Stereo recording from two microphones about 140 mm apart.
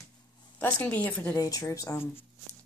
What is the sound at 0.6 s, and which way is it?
Speech, 15° left (ahead or behind).